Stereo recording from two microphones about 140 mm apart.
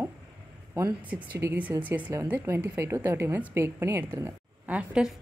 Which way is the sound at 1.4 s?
15° right (ahead or behind).